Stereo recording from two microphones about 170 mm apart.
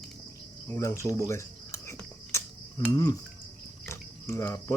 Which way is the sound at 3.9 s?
15° left (ahead or behind).